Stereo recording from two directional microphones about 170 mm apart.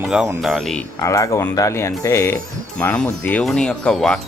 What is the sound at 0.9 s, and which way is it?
Speech, 20° left (ahead or behind).